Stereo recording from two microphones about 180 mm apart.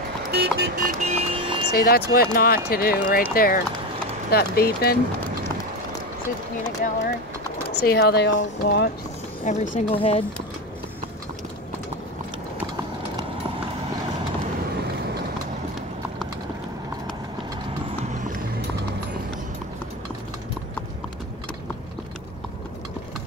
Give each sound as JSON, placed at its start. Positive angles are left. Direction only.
{"t": 0.3, "sound": "music", "side_deg": -60}
{"t": 1.7, "sound": "speech", "side_deg": 60}
{"t": 7.7, "sound": "speech", "side_deg": 65}
{"t": 9.4, "sound": "speech", "side_deg": 45}